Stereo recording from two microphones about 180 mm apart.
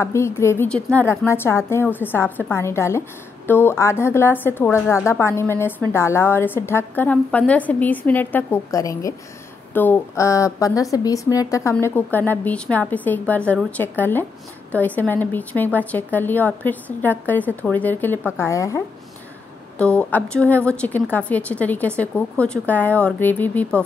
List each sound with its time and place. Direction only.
0.0 s a woman's voice: 15° left (ahead or behind)
19.8 s a woman's voice: 10° left (ahead or behind)